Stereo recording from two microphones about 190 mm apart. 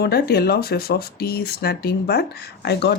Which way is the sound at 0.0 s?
55° left (ahead or behind).